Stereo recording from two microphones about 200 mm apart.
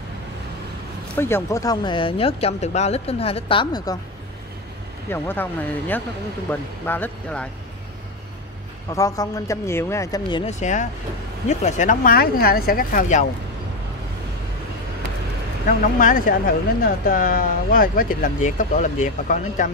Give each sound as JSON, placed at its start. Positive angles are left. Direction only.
{"t": 1.1, "sound": "speech", "side_deg": 10}
{"t": 5.1, "sound": "speech", "side_deg": 10}
{"t": 8.9, "sound": "speech", "side_deg": 15}
{"t": 10.4, "sound": "speech", "side_deg": 35}
{"t": 15.8, "sound": "speech", "side_deg": 40}